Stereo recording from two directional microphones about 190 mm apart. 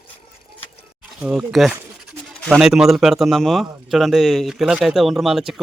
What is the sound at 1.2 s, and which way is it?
Speech, 5° right (ahead or behind).